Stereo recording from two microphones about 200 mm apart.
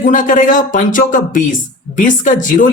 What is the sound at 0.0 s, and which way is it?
Speech, 40° left (ahead or behind).